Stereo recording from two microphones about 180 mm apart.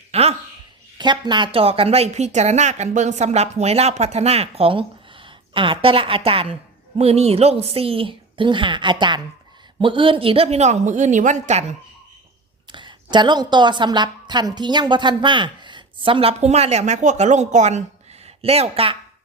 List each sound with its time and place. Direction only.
0.1 s a sound: 35° right (ahead or behind)
0.9 s a woman's voice: 25° right (ahead or behind); by 11.8 s 40° right (ahead or behind)
12.7 s a woman's voice: 25° right (ahead or behind)